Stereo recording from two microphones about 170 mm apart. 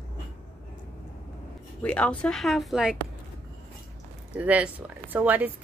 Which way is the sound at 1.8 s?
5° left (ahead or behind).